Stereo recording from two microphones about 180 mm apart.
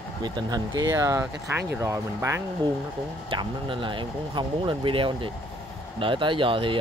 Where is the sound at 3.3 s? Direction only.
30° right (ahead or behind).